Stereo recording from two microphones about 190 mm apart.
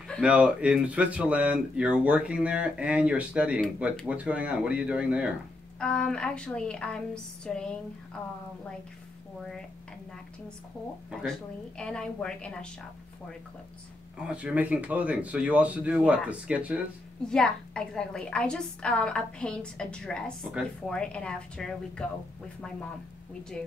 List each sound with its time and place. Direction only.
0.2 s a woman's voice: 5° right (ahead or behind)
5.8 s a woman's voice: 5° left (ahead or behind)
11.1 s a woman's voice: 5° left (ahead or behind)
14.1 s speech: 5° right (ahead or behind)
17.3 s a woman's voice: 5° left (ahead or behind)